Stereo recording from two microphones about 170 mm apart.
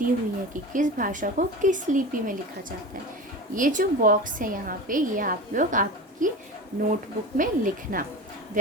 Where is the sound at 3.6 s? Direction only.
50° right (ahead or behind).